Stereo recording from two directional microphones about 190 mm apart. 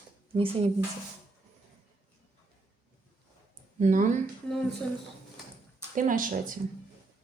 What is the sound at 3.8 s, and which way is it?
Speech, 40° right (ahead or behind).